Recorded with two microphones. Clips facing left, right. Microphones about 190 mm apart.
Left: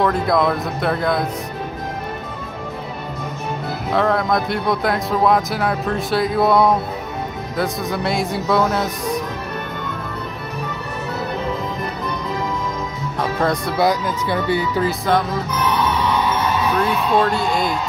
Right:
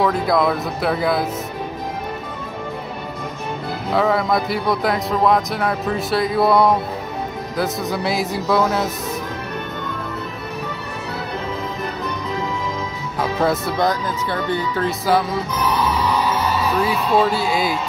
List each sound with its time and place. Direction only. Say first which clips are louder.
0.0 s speech: even; centre (ahead or behind)
3.9 s speech: even; centre (ahead or behind)
13.2 s speech: right 1 dB; 5° right (ahead or behind)
13.7 s speech: left 2 dB; 10° left (ahead or behind)
15.0 s speech: even; 5° right (ahead or behind)